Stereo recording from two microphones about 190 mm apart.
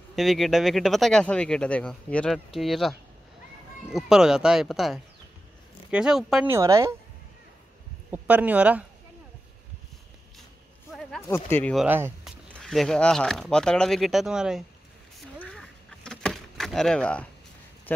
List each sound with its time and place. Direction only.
0.1 s speech: centre (ahead or behind)
6.5 s speech: 15° right (ahead or behind)
8.1 s speech: 10° right (ahead or behind)
10.9 s a sound: centre (ahead or behind)
11.1 s speech: 10° left (ahead or behind)
11.7 s speech: 5° right (ahead or behind)
15.1 s power windows: centre (ahead or behind)
17.9 s clip-clop: 10° left (ahead or behind)